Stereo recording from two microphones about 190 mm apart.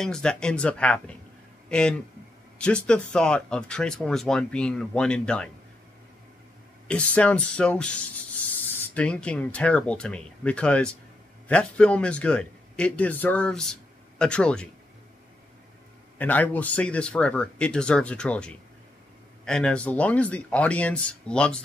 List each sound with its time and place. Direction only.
0.0 s speech: 5° left (ahead or behind)
6.9 s speech: 5° left (ahead or behind)
16.2 s speech: 10° left (ahead or behind)